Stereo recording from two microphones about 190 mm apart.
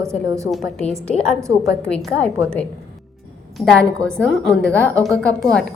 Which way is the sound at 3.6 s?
5° left (ahead or behind).